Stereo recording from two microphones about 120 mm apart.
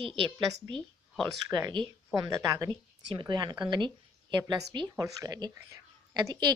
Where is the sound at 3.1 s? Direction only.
35° right (ahead or behind).